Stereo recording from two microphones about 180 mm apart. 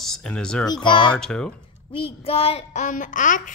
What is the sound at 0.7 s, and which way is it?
Speech, 25° left (ahead or behind).